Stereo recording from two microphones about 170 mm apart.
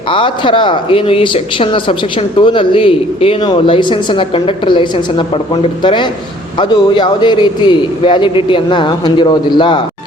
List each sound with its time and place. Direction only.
0.1 s a man's voice: 30° left (ahead or behind)